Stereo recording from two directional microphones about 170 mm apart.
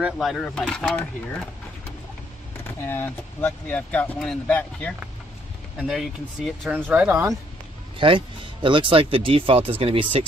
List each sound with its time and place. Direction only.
0.0 s speech: centre (ahead or behind)
2.9 s speech: 15° left (ahead or behind)
6.9 s speech: 10° right (ahead or behind)
8.0 s speech: 30° right (ahead or behind)